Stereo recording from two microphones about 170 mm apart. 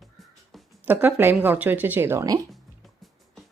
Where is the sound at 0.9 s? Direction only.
10° right (ahead or behind).